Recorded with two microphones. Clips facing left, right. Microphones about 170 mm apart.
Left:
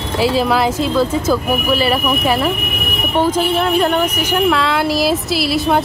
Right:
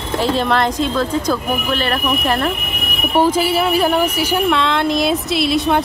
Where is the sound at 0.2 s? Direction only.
5° left (ahead or behind).